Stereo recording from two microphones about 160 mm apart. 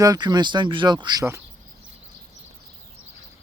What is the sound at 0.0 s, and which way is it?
Speech, 25° right (ahead or behind).